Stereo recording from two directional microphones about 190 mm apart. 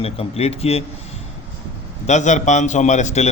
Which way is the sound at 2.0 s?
40° left (ahead or behind).